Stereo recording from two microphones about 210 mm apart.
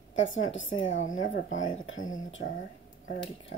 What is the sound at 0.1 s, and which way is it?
A woman's voice, 65° left (ahead or behind).